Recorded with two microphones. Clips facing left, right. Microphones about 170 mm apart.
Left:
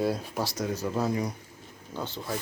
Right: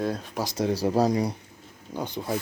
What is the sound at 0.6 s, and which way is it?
Speech, 35° right (ahead or behind).